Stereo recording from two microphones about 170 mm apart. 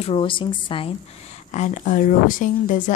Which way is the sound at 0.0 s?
30° left (ahead or behind).